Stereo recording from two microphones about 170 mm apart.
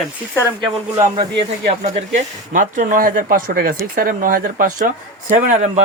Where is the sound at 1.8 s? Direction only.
45° right (ahead or behind).